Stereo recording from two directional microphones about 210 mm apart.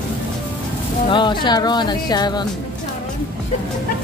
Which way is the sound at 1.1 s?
20° left (ahead or behind).